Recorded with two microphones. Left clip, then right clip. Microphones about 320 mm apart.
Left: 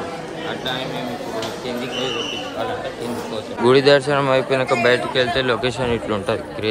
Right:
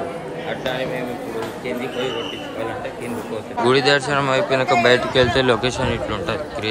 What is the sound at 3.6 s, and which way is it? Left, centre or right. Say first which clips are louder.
A man's voice: left 3 dB; centre.